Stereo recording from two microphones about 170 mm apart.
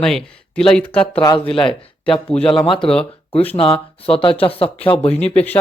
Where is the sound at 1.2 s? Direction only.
30° left (ahead or behind).